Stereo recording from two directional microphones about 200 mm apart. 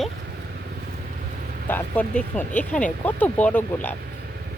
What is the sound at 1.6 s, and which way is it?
Speech, 10° left (ahead or behind).